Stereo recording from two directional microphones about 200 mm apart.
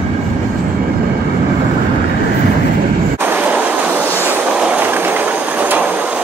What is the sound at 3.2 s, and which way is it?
Vehicle, 10° right (ahead or behind).